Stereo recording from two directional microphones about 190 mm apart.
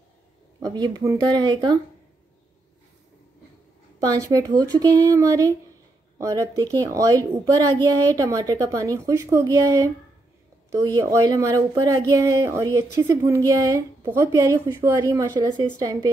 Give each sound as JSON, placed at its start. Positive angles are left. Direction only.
{"t": 0.6, "sound": "a woman's voice", "side_deg": -20}
{"t": 4.0, "sound": "a woman's voice", "side_deg": -20}
{"t": 11.0, "sound": "speech", "side_deg": -15}